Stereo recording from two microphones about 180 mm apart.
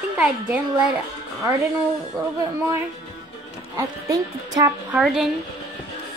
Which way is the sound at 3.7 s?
20° right (ahead or behind).